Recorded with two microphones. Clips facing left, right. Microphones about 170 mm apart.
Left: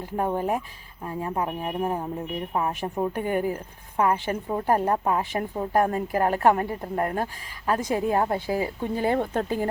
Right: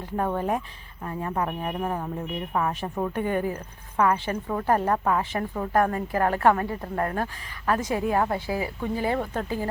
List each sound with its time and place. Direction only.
0.0 s a woman's voice: 15° left (ahead or behind)